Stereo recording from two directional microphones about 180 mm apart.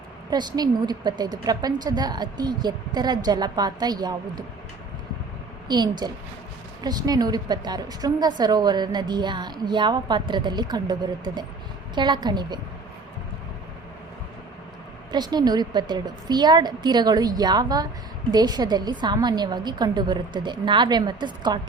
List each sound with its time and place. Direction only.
0.3 s a woman's voice: 25° right (ahead or behind)
5.6 s a woman's voice: 25° right (ahead or behind)
15.1 s a woman's voice: 20° right (ahead or behind)